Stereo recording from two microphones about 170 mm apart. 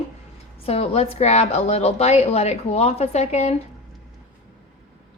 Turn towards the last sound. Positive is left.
turn(degrees=40)  # may be behind; listen again after turning